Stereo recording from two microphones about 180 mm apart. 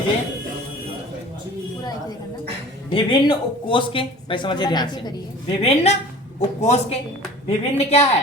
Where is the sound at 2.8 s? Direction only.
30° left (ahead or behind).